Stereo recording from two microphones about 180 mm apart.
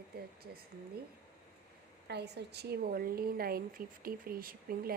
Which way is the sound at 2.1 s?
70° right (ahead or behind).